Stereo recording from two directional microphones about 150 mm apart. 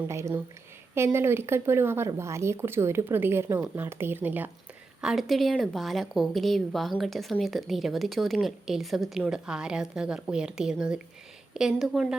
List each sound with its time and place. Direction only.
0.1 s speech: 20° right (ahead or behind); by 12.1 s centre (ahead or behind)